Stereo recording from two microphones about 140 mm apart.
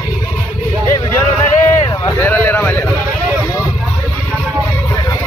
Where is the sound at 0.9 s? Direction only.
20° left (ahead or behind).